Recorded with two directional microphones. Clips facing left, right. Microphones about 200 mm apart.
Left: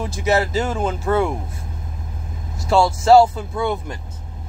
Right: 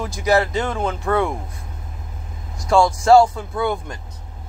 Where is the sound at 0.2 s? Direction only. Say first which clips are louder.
Right 1 dB; 25° left (ahead or behind).